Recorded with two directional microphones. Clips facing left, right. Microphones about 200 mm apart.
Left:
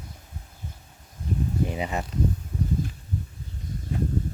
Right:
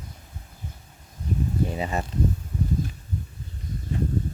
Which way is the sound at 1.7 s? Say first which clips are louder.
Right 1 dB; 15° left (ahead or behind).